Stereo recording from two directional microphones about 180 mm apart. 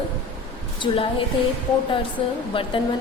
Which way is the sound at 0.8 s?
30° left (ahead or behind).